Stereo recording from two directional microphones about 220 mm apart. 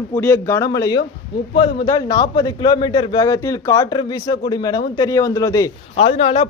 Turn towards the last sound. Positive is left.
turn(degrees=30)  # may be behind; listen again after turning